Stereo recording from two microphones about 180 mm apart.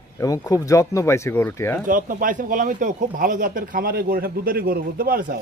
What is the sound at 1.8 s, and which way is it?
Speech, 50° right (ahead or behind).